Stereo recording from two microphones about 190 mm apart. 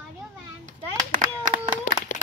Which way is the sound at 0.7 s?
45° right (ahead or behind).